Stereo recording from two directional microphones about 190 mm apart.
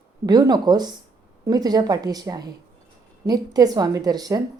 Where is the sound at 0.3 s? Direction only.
20° right (ahead or behind).